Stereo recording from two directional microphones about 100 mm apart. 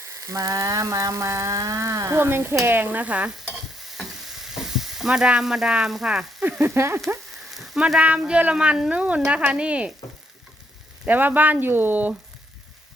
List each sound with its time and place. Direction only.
0.3 s frying: 35° right (ahead or behind); by 3.3 s 15° right (ahead or behind)
3.4 s stir: centre (ahead or behind)
6.6 s speech: 25° right (ahead or behind)
7.5 s speech: centre (ahead or behind)
11.0 s speech: 15° right (ahead or behind)